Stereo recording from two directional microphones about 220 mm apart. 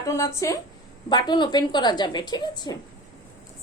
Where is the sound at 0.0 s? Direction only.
15° left (ahead or behind).